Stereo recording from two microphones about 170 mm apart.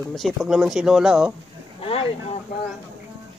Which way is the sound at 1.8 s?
35° left (ahead or behind).